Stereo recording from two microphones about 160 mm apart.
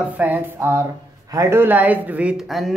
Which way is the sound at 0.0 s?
10° right (ahead or behind).